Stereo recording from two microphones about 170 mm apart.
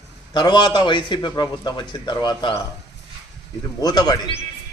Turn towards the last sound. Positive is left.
turn(degrees=25)  # may be behind; listen again after turning